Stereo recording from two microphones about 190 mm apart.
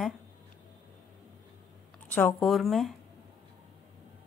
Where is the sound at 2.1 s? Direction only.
5° left (ahead or behind).